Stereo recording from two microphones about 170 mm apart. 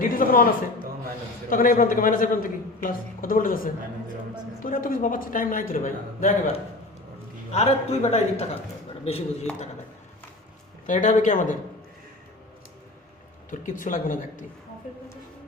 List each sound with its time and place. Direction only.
0.0 s a man's voice: 55° left (ahead or behind)
1.5 s a man's voice: 55° left (ahead or behind)
7.5 s a man's voice: 40° left (ahead or behind)
10.8 s a man's voice: 50° left (ahead or behind)
13.5 s a man's voice: 50° left (ahead or behind)